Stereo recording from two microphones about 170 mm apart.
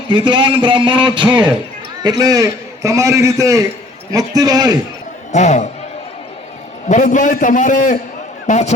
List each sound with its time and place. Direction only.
0.1 s a man's voice: 30° right (ahead or behind)
5.3 s a man's voice: 45° left (ahead or behind)
6.8 s a man's voice: 45° left (ahead or behind)